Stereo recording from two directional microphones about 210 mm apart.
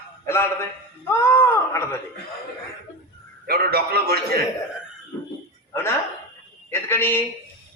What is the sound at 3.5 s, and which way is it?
Speech, 45° right (ahead or behind).